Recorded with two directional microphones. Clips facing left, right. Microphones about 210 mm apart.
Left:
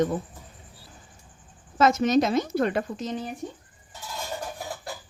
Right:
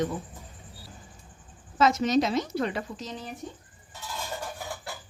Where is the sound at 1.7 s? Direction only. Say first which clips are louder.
Left 2 dB; 50° left (ahead or behind).